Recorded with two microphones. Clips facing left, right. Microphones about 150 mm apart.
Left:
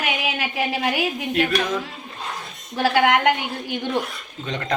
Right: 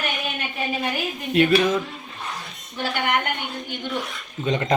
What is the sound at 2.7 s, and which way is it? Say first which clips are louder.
Speech: left 6 dB; 90° left.